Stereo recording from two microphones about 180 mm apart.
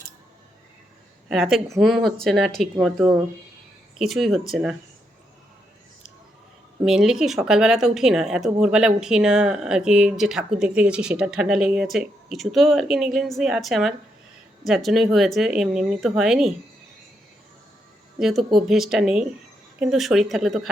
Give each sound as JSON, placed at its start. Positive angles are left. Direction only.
{"t": 1.3, "sound": "speech", "side_deg": 0}
{"t": 6.8, "sound": "speech", "side_deg": 0}
{"t": 18.2, "sound": "speech", "side_deg": 0}